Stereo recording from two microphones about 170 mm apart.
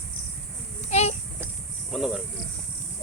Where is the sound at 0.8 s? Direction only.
40° left (ahead or behind).